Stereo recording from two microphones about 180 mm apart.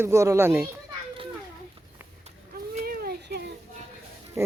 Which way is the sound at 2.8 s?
55° right (ahead or behind).